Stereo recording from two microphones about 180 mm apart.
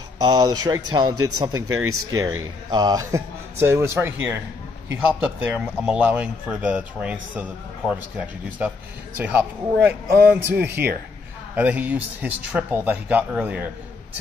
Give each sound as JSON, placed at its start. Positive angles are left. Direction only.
{"t": 0.3, "sound": "a man's voice", "side_deg": -20}
{"t": 10.5, "sound": "speech", "side_deg": -60}
{"t": 11.5, "sound": "a man's voice", "side_deg": -10}